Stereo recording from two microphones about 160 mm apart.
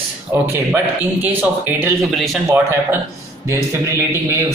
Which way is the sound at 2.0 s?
Centre (ahead or behind).